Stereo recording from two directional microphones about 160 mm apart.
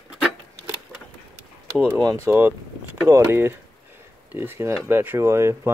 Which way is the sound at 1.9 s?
20° right (ahead or behind).